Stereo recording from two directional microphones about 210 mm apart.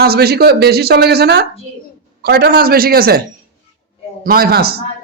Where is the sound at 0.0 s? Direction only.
50° right (ahead or behind).